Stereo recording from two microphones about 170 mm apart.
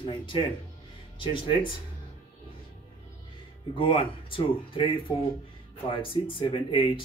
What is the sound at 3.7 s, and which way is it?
Speech, 30° left (ahead or behind).